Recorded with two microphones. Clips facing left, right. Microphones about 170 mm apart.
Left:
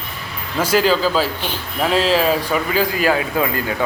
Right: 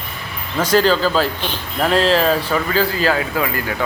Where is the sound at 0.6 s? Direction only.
10° left (ahead or behind).